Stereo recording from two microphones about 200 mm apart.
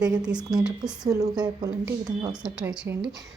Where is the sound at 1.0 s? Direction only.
20° right (ahead or behind).